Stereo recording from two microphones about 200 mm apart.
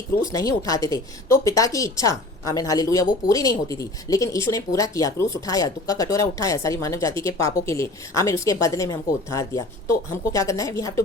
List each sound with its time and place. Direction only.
0.3 s a woman's voice: 15° left (ahead or behind)